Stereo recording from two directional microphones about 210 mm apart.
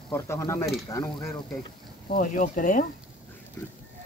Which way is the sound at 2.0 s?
40° left (ahead or behind).